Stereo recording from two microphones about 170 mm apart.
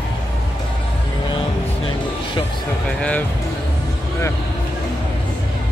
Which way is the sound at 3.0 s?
10° left (ahead or behind).